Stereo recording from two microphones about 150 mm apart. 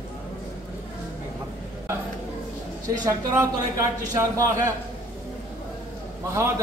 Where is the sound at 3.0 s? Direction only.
20° right (ahead or behind).